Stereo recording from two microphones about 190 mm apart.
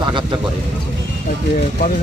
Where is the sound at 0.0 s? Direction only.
25° right (ahead or behind).